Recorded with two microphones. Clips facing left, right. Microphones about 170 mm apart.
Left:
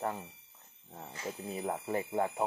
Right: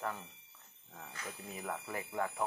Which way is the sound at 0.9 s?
25° left (ahead or behind).